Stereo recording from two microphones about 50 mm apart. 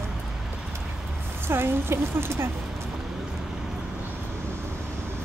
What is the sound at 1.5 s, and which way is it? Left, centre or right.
A woman's voice, right.